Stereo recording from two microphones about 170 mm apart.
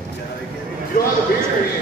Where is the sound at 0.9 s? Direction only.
50° left (ahead or behind).